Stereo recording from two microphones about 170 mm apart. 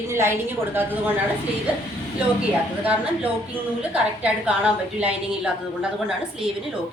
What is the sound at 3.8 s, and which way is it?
A woman's voice, 5° right (ahead or behind).